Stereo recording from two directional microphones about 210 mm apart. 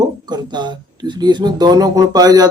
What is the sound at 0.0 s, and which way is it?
Speech, 20° right (ahead or behind).